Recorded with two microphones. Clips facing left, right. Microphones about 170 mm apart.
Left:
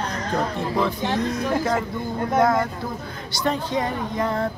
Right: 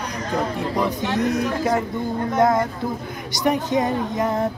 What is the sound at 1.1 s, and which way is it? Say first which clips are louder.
Speech: right 3 dB; 20° right (ahead or behind).